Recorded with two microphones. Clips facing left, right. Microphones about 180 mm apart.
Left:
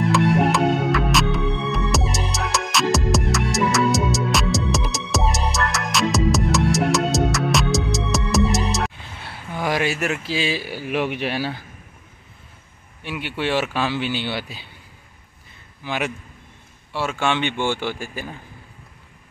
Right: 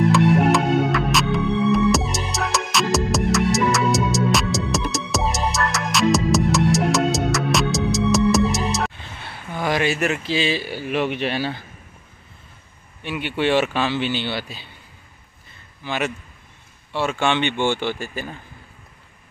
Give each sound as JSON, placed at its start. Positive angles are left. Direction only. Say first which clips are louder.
{"t": 0.1, "sound": "music", "louder": "right 2 dB", "side_deg": 0}
{"t": 13.0, "sound": "speech", "louder": "right 3 dB", "side_deg": 5}
{"t": 15.8, "sound": "a man's voice", "louder": "right 1 dB", "side_deg": 10}